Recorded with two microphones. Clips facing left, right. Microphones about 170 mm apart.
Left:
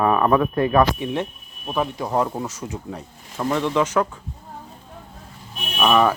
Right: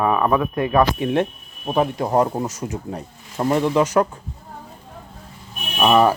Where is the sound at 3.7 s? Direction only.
40° right (ahead or behind).